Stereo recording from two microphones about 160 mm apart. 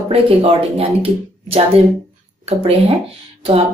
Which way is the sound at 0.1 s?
35° right (ahead or behind).